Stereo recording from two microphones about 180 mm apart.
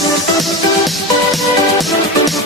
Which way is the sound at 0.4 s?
Centre (ahead or behind).